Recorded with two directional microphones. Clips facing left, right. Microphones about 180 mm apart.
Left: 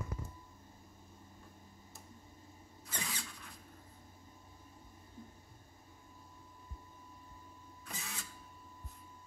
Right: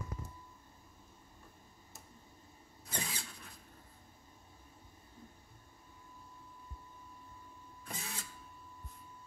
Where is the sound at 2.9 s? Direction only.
30° right (ahead or behind).